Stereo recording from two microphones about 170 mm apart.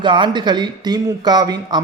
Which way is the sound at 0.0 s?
30° right (ahead or behind).